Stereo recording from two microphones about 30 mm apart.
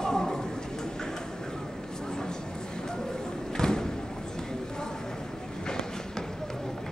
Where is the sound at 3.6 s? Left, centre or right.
Left.